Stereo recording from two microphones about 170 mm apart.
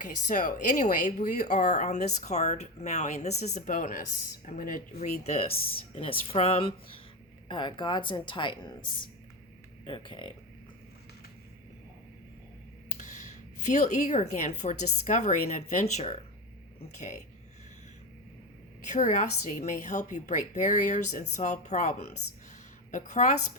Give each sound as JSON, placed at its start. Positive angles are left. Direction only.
{"t": 0.0, "sound": "speech", "side_deg": 50}
{"t": 5.2, "sound": "speech", "side_deg": 35}
{"t": 13.0, "sound": "speech", "side_deg": 45}
{"t": 18.9, "sound": "speech", "side_deg": 45}